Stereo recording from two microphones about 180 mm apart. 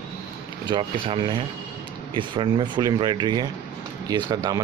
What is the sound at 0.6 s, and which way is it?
Speech, 25° right (ahead or behind).